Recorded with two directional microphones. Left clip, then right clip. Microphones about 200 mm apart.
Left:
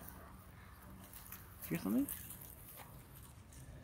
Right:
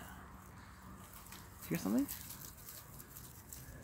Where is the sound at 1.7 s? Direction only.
20° right (ahead or behind).